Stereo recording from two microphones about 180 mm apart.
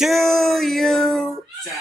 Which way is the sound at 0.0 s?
Centre (ahead or behind).